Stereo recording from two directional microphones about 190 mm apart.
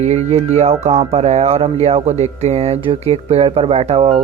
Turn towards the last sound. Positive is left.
turn(degrees=-30)  # may be behind; listen again after turning